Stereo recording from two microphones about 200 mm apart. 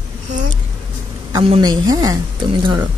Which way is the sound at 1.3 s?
20° right (ahead or behind).